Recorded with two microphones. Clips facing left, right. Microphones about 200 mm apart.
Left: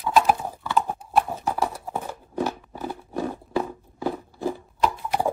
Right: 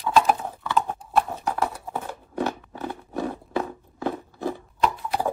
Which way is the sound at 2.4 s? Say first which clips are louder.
Even; 10° left (ahead or behind).